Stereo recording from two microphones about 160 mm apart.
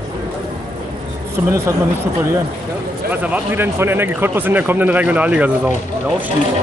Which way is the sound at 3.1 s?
10° right (ahead or behind).